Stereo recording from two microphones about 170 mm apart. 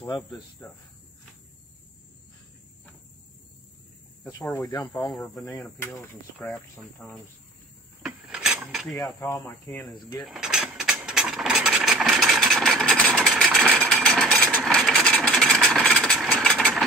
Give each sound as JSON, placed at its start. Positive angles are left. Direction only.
{"t": 4.2, "sound": "speech", "side_deg": 20}
{"t": 4.9, "sound": "speech", "side_deg": 0}
{"t": 8.0, "sound": "a sound", "side_deg": -5}
{"t": 9.2, "sound": "speech", "side_deg": 15}
{"t": 10.2, "sound": "mechanisms", "side_deg": -5}